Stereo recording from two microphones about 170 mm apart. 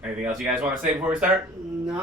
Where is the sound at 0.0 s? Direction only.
10° right (ahead or behind).